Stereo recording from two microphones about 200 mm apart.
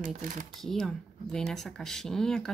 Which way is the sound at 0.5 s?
Centre (ahead or behind).